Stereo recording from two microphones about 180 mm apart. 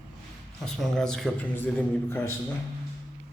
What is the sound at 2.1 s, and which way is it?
Speech, 15° left (ahead or behind).